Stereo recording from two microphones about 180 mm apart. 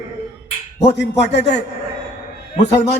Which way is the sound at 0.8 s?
75° left (ahead or behind).